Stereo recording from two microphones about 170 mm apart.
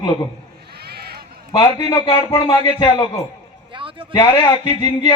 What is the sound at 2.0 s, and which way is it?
Speech, 30° left (ahead or behind).